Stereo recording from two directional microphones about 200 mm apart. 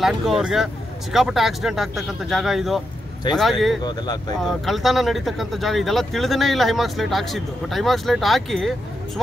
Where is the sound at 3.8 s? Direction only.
20° left (ahead or behind).